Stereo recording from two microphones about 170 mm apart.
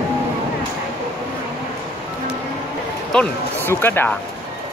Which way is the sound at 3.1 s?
10° left (ahead or behind).